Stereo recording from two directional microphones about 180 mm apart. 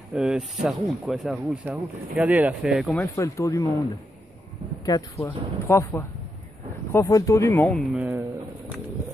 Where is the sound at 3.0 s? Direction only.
15° left (ahead or behind).